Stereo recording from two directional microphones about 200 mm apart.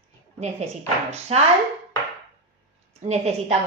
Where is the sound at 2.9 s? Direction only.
35° right (ahead or behind).